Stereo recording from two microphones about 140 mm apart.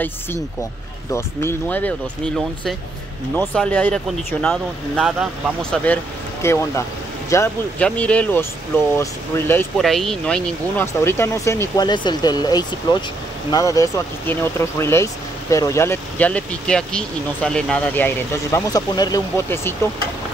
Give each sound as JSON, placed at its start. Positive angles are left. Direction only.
{"t": 1.1, "sound": "speech", "side_deg": 15}
{"t": 3.3, "sound": "speech", "side_deg": 10}
{"t": 6.4, "sound": "speech", "side_deg": 20}
{"t": 7.8, "sound": "speech", "side_deg": 10}
{"t": 9.8, "sound": "speech", "side_deg": 0}
{"t": 11.8, "sound": "speech", "side_deg": 30}